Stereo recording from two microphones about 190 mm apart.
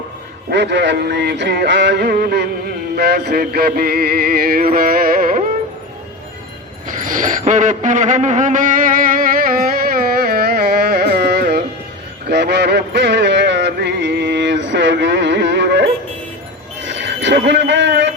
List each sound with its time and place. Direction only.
0.5 s music: 65° right (ahead or behind); by 5.4 s 45° right (ahead or behind)
6.8 s a sound: 45° right (ahead or behind)
12.3 s music: 60° right (ahead or behind)
16.8 s wind chime: 70° right (ahead or behind)